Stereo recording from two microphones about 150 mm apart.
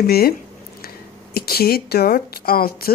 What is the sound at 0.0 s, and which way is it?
Speech, 90° left.